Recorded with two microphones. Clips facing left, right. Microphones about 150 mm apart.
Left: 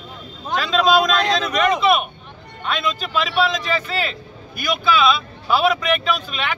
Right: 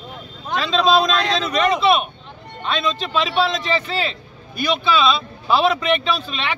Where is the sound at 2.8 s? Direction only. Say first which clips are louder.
Right 1 dB; 30° right (ahead or behind).